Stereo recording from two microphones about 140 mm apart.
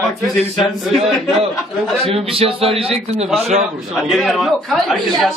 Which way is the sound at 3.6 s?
Centre (ahead or behind).